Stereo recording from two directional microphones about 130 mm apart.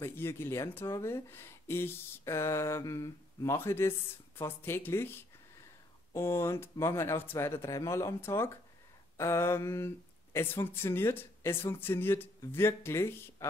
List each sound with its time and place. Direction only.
0.0 s speech: 20° left (ahead or behind)